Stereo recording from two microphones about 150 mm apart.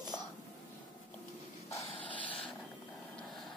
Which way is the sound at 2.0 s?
35° left (ahead or behind).